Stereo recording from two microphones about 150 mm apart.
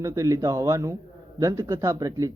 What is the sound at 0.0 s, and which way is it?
Speech, 20° right (ahead or behind).